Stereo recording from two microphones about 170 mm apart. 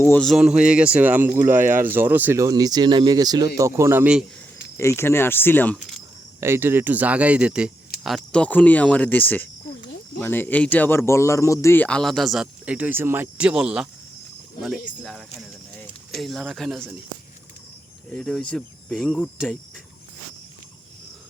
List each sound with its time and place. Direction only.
0.2 s speech: centre (ahead or behind)
1.5 s speech: 50° right (ahead or behind)
2.0 s speech: 10° right (ahead or behind)
4.8 s speech: 15° left (ahead or behind)
5.7 s speech: centre (ahead or behind)
6.4 s speech: 15° right (ahead or behind)
16.1 s cricket: centre (ahead or behind)
18.1 s cricket: 5° left (ahead or behind)